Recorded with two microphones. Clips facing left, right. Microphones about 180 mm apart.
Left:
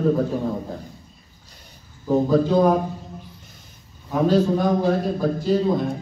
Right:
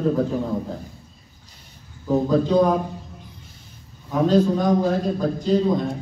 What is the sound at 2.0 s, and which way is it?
Speech, 5° left (ahead or behind).